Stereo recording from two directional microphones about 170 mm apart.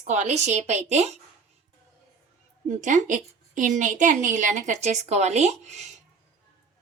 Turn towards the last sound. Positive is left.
turn(degrees=-40)  # may be behind; listen again after turning